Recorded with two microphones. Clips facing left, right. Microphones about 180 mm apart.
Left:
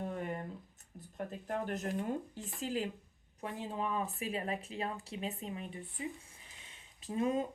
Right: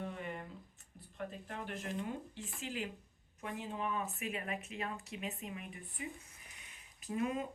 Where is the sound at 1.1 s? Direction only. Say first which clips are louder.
Left 6 dB; 40° left (ahead or behind).